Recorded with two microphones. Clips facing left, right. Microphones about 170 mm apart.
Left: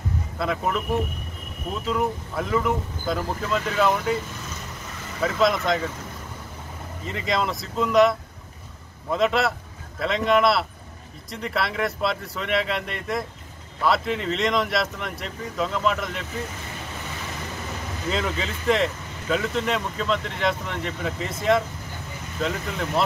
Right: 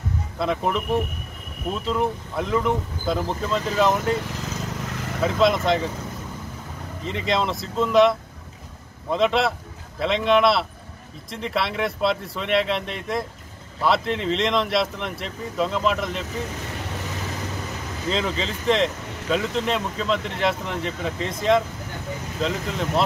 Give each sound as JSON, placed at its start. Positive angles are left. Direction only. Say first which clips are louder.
{"t": 0.4, "sound": "speech", "louder": "right 2 dB", "side_deg": 0}
{"t": 1.9, "sound": "speech", "louder": "even", "side_deg": 0}
{"t": 4.2, "sound": "vehicle", "louder": "right 5 dB", "side_deg": -80}
{"t": 5.2, "sound": "speech", "louder": "right 2 dB", "side_deg": 0}
{"t": 7.1, "sound": "speech", "louder": "right 2 dB", "side_deg": 0}
{"t": 18.1, "sound": "speech", "louder": "right 2 dB", "side_deg": 5}